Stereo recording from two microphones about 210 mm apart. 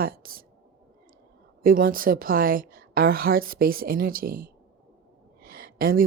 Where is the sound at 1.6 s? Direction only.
45° right (ahead or behind).